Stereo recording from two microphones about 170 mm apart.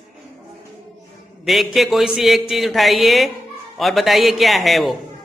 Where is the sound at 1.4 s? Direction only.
Centre (ahead or behind).